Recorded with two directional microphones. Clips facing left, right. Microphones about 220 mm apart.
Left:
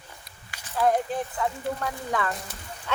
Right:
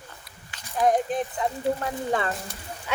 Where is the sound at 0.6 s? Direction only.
15° right (ahead or behind).